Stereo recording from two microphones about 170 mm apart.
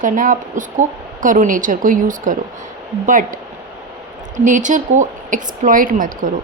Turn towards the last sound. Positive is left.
turn(degrees=-55)  # may be behind; listen again after turning